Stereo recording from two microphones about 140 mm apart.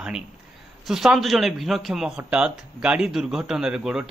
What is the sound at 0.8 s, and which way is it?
Speech, centre (ahead or behind).